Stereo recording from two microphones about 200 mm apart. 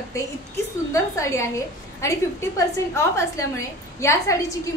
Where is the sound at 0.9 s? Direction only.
15° left (ahead or behind).